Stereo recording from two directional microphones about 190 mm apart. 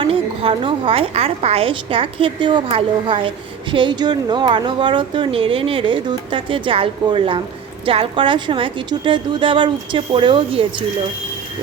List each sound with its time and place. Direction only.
0.0 s a woman's voice: 30° right (ahead or behind)